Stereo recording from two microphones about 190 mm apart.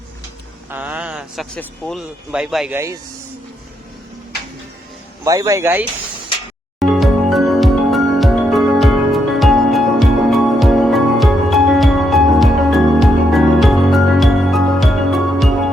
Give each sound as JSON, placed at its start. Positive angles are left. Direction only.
{"t": 0.7, "sound": "a sound", "side_deg": -10}
{"t": 1.5, "sound": "speech", "side_deg": 0}
{"t": 2.7, "sound": "speech", "side_deg": -15}
{"t": 5.2, "sound": "speech", "side_deg": -15}
{"t": 6.7, "sound": "music", "side_deg": 0}